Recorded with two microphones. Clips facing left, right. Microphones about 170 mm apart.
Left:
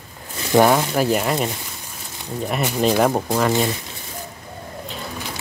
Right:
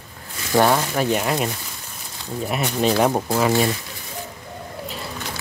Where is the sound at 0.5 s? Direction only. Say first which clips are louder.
Left 3 dB; 10° left (ahead or behind).